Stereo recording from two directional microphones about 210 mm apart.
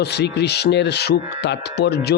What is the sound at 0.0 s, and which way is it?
Speech, 50° left (ahead or behind).